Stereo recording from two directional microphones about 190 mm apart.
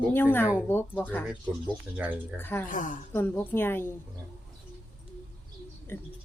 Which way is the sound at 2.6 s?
45° left (ahead or behind).